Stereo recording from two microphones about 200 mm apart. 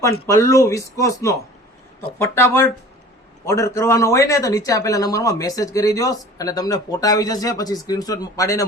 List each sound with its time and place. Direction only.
0.3 s speech: 15° left (ahead or behind)